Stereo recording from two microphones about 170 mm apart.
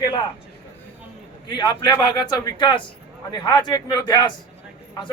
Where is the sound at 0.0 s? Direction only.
25° left (ahead or behind).